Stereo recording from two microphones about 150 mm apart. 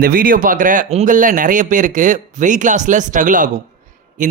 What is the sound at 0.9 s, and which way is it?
Speech, 50° right (ahead or behind).